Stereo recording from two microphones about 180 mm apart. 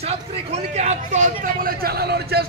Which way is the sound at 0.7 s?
40° right (ahead or behind).